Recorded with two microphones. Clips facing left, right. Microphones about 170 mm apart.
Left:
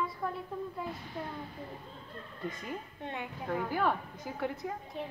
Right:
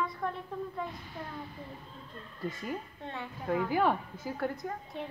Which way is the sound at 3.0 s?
15° left (ahead or behind).